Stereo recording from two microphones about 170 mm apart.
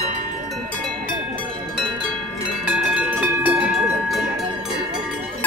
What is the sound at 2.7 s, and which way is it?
Music, 5° right (ahead or behind).